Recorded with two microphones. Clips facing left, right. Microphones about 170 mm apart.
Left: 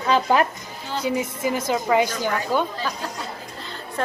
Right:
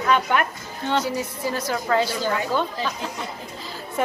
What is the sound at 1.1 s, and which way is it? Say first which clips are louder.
A woman's voice: left 3 dB; 20° left (ahead or behind).